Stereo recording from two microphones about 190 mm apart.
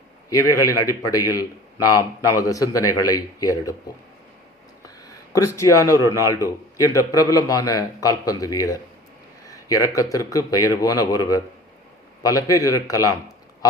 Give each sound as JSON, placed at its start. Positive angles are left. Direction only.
{"t": 0.3, "sound": "a man's voice", "side_deg": 20}
{"t": 5.5, "sound": "a man's voice", "side_deg": 15}